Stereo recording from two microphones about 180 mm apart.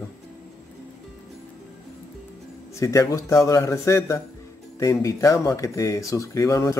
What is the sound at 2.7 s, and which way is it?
Speech, 15° left (ahead or behind).